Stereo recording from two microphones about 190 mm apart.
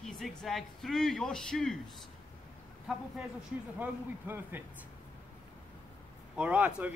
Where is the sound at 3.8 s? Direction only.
10° right (ahead or behind).